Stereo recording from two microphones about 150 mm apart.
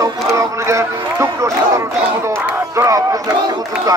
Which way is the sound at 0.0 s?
20° right (ahead or behind).